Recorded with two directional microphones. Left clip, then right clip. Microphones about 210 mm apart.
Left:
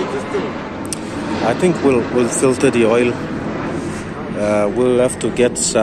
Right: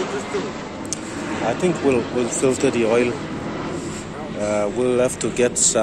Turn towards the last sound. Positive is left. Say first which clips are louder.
# left 4 dB
turn(degrees=-10)  # may be behind; listen again after turning